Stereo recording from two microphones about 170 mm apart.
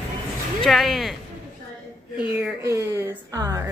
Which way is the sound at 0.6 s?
Centre (ahead or behind).